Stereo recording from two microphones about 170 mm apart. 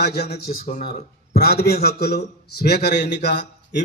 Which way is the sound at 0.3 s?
35° left (ahead or behind).